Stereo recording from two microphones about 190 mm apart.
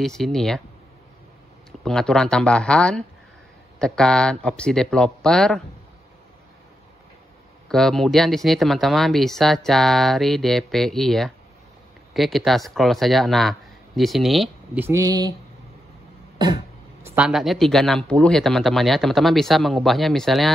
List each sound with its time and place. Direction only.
0.0 s speech: centre (ahead or behind)
1.9 s speech: 5° left (ahead or behind)
7.6 s speech: centre (ahead or behind); by 15.3 s 20° right (ahead or behind)
16.3 s cough: 20° right (ahead or behind)
17.1 s speech: 5° right (ahead or behind)